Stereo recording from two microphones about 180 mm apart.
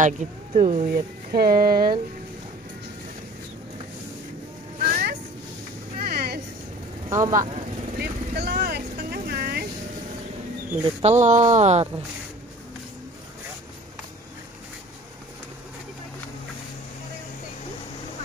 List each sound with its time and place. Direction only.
0.0 s speech: 45° right (ahead or behind)
4.7 s a sound: 55° right (ahead or behind)
7.1 s speech: 15° right (ahead or behind)
8.0 s vehicle: 60° right (ahead or behind)
11.0 s speech: 40° right (ahead or behind)